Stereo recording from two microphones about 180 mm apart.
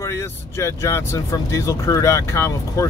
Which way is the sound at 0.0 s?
15° left (ahead or behind).